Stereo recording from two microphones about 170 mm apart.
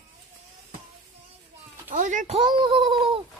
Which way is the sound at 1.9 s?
50° right (ahead or behind).